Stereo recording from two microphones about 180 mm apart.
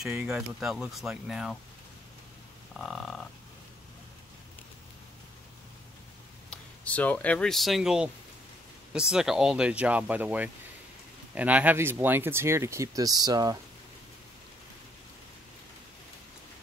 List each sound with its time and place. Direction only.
0.0 s speech: 5° right (ahead or behind)
2.7 s speech: centre (ahead or behind)
6.5 s speech: 5° left (ahead or behind); by 13.6 s 20° right (ahead or behind)